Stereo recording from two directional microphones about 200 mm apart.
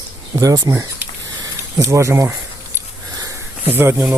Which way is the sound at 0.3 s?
20° right (ahead or behind).